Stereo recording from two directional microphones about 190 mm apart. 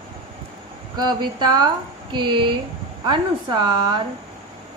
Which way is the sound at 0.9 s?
25° right (ahead or behind).